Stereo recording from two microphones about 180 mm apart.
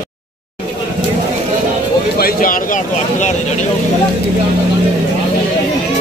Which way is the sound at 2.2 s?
50° left (ahead or behind).